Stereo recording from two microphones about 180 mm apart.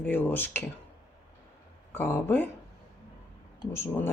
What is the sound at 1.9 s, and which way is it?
Cutlery, 10° left (ahead or behind).